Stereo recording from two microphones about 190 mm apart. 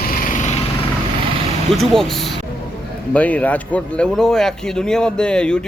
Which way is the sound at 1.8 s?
Centre (ahead or behind).